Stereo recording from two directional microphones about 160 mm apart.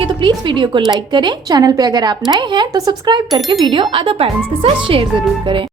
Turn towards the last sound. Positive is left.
turn(degrees=-35)  # may be behind; listen again after turning